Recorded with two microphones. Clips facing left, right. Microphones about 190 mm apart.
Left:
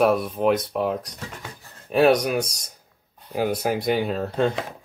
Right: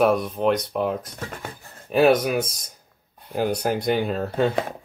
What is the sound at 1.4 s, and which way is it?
Speech, 50° right (ahead or behind).